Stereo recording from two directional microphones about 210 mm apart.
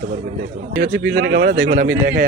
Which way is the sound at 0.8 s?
50° right (ahead or behind).